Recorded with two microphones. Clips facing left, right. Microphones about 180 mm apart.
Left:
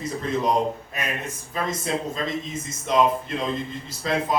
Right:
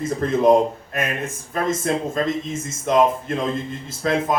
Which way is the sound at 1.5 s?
50° right (ahead or behind).